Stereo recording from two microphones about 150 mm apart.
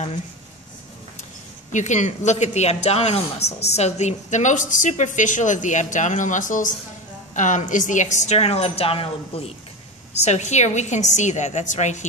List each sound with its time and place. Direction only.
1.7 s a man's voice: 55° left (ahead or behind); by 9.5 s 40° left (ahead or behind)
10.2 s a woman's voice: 50° left (ahead or behind)